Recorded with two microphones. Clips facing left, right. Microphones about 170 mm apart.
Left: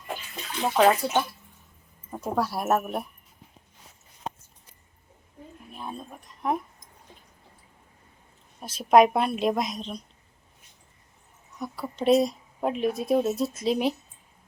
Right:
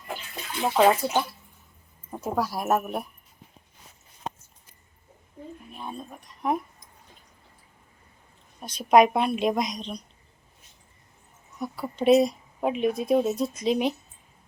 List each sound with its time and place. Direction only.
0.4 s a woman's voice: 5° right (ahead or behind)
5.7 s a woman's voice: centre (ahead or behind)
8.6 s a woman's voice: 5° left (ahead or behind)
11.6 s a woman's voice: centre (ahead or behind)